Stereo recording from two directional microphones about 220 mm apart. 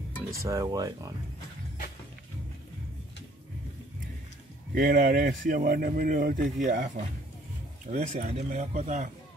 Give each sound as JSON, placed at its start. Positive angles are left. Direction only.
{"t": 0.3, "sound": "speech", "side_deg": -15}
{"t": 4.7, "sound": "speech", "side_deg": -40}